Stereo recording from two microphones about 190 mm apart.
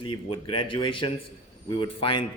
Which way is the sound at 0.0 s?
25° left (ahead or behind).